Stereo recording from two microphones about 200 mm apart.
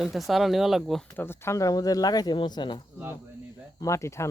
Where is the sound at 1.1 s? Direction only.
10° left (ahead or behind).